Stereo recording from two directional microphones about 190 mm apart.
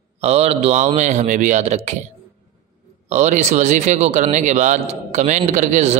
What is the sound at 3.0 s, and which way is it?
Speech, 35° right (ahead or behind).